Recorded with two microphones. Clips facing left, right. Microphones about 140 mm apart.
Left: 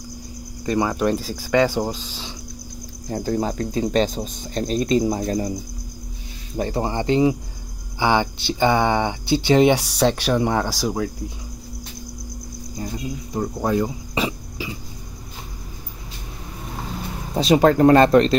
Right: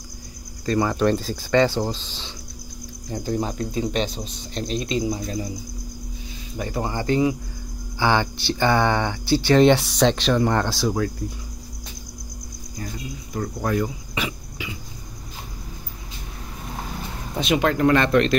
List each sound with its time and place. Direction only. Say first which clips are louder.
0.7 s speech: even; 15° left (ahead or behind)
3.1 s speech: left 3 dB; 40° left (ahead or behind)
6.5 s cricket: left 4 dB; 35° left (ahead or behind)
8.0 s speech: left 1 dB; 15° left (ahead or behind)
12.7 s cricket: left 4 dB; 20° left (ahead or behind)
14.1 s throat clearing: left 5 dB; 35° left (ahead or behind)
17.3 s speech: left 6 dB; 35° left (ahead or behind)